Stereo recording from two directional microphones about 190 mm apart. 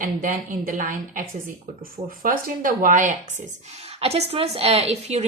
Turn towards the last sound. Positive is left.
turn(degrees=-35)  # may be behind; listen again after turning